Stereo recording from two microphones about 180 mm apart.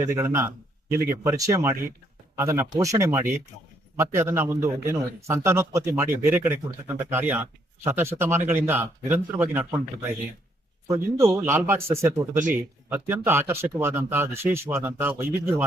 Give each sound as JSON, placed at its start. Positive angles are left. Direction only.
{"t": 0.1, "sound": "a man's voice", "side_deg": -15}
{"t": 10.8, "sound": "a man's voice", "side_deg": -15}